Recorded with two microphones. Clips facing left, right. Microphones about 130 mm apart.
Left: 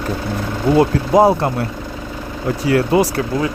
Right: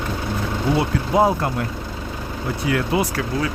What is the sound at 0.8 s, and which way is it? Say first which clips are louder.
Speech: left 7 dB; 35° left (ahead or behind).